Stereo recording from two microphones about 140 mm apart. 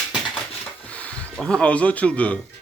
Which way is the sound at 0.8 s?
10° left (ahead or behind).